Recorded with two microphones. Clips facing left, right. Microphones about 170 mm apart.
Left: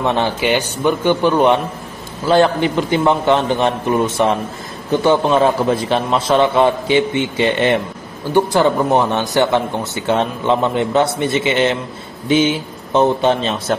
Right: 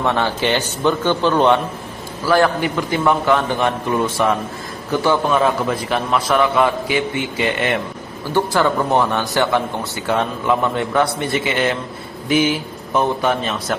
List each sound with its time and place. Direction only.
0.0 s a man's voice: 20° left (ahead or behind)
2.2 s speech: 25° left (ahead or behind)